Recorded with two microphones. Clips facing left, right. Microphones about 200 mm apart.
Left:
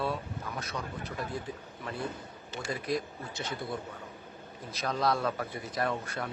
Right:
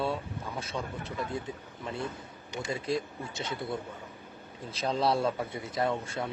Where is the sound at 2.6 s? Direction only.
25° right (ahead or behind).